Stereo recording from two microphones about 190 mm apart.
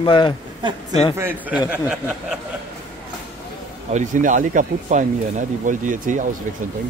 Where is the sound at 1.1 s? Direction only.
10° right (ahead or behind).